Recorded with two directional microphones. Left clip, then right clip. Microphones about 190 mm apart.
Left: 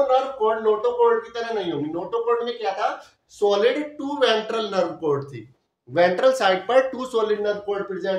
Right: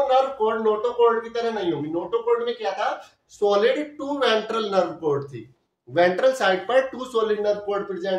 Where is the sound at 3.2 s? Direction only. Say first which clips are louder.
Even; 20° left (ahead or behind).